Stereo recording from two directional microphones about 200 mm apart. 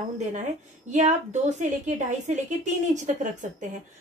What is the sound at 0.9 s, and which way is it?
A woman's voice, 35° right (ahead or behind).